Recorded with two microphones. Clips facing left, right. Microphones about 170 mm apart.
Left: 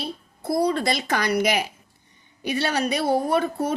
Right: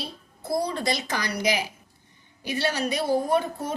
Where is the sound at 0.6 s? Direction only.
65° left (ahead or behind).